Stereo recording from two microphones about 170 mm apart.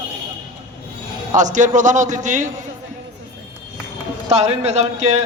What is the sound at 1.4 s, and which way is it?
A man's voice, 45° right (ahead or behind).